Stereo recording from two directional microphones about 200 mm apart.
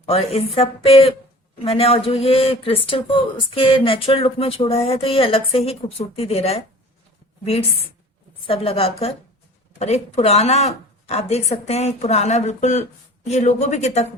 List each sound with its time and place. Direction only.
0.0 s speech: 30° left (ahead or behind)